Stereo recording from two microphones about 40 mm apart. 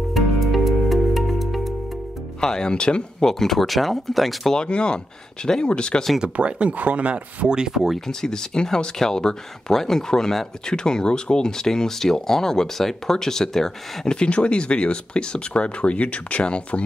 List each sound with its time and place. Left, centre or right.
0.1 s music: centre
2.4 s speech: centre
3.3 s speech: centre
4.6 s speech: left
6.2 s speech: right
7.5 s speech: centre
8.1 s speech: centre
14.1 s speech: left